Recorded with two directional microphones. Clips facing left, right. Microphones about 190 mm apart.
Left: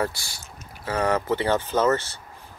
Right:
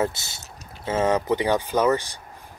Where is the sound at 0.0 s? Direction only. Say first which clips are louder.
Right 2 dB; 20° right (ahead or behind).